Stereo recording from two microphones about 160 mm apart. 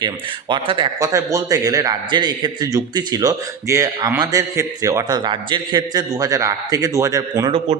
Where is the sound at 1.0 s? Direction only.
20° right (ahead or behind).